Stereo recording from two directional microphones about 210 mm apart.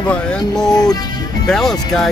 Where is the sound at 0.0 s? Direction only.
5° left (ahead or behind).